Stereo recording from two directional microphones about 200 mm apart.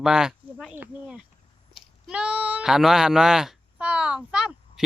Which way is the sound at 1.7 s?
5° right (ahead or behind).